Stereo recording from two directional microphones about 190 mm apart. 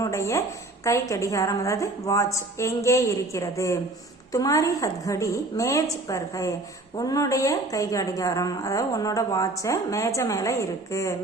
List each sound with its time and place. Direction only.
0.0 s a woman's voice: 15° left (ahead or behind)